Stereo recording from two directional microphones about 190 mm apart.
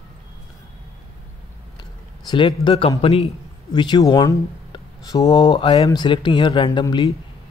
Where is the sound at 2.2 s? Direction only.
25° left (ahead or behind).